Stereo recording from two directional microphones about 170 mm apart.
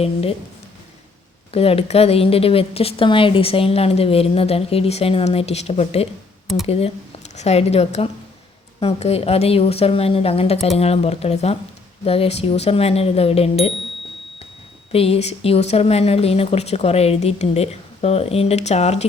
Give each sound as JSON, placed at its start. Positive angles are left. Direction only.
{"t": 0.0, "sound": "speech", "side_deg": 35}
{"t": 1.5, "sound": "speech", "side_deg": 35}
{"t": 14.9, "sound": "speech", "side_deg": 35}